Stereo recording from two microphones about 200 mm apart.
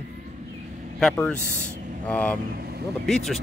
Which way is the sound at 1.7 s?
40° right (ahead or behind).